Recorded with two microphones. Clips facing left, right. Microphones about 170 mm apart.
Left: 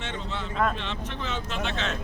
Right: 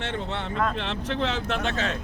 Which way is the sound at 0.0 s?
65° right (ahead or behind).